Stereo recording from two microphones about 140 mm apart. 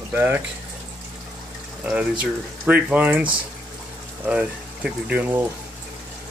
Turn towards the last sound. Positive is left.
turn(degrees=-15)  # may be behind; listen again after turning